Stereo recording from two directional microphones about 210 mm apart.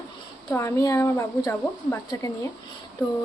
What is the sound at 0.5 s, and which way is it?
A woman's voice, 15° left (ahead or behind).